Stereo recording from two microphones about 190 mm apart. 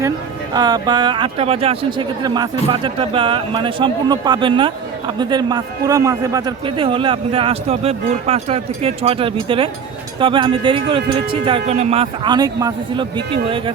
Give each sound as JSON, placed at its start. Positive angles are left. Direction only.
{"t": 0.5, "sound": "speech", "side_deg": -20}